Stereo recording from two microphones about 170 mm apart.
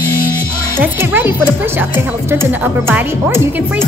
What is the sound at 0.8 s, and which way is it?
Speech, 15° right (ahead or behind).